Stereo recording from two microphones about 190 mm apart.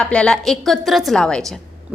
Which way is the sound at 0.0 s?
5° left (ahead or behind).